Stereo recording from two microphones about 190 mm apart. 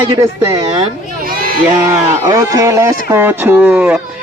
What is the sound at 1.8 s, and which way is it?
A man's voice, 15° right (ahead or behind).